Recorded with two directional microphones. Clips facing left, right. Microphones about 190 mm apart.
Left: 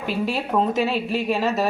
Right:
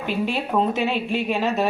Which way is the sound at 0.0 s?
Centre (ahead or behind).